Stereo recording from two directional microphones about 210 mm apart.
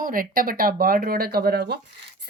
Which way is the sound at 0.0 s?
40° right (ahead or behind).